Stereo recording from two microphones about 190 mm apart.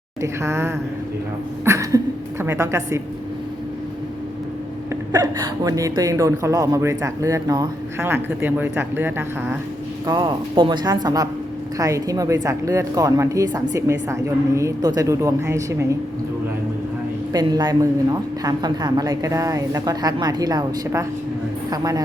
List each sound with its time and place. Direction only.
0.2 s speech: 15° right (ahead or behind)
1.6 s a sound: 15° right (ahead or behind)
2.4 s speech: 15° right (ahead or behind)
5.1 s speech: 20° right (ahead or behind)
10.1 s a woman's voice: 25° right (ahead or behind)
17.3 s a woman's voice: 20° right (ahead or behind)